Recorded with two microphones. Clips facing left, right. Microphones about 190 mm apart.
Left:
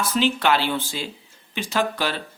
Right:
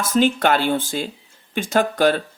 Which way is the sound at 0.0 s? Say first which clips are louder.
Right 4 dB; 50° right (ahead or behind).